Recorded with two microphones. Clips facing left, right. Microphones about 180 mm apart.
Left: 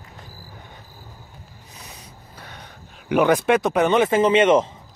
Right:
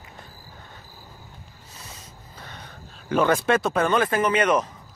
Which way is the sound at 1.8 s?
15° left (ahead or behind).